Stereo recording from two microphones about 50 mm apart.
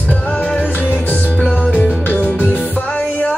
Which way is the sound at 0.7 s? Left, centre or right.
Left.